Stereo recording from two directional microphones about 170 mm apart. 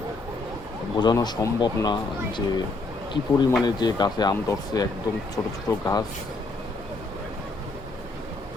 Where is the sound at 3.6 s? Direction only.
25° left (ahead or behind).